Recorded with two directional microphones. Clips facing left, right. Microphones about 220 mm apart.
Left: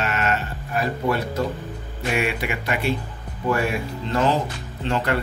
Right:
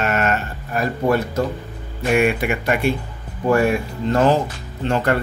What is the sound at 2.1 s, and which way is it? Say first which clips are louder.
Speech: right 7 dB; 50° right (ahead or behind).